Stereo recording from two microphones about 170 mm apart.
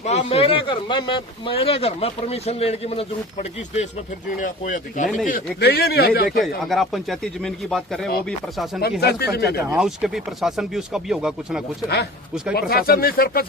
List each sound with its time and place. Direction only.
0.0 s speech: 40° left (ahead or behind)
4.4 s speech: 50° left (ahead or behind)
5.5 s speech: 70° left (ahead or behind)
6.4 s speech: centre (ahead or behind)
8.8 s speech: 70° left (ahead or behind)
9.7 s speech: 5° right (ahead or behind)
12.5 s speech: 65° left (ahead or behind)